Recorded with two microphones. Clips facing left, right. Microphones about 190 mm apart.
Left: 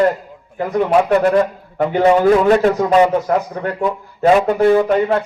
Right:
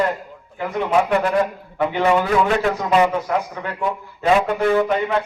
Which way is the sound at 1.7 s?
40° left (ahead or behind).